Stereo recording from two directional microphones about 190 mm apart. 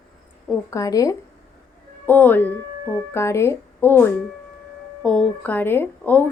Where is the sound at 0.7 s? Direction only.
20° left (ahead or behind).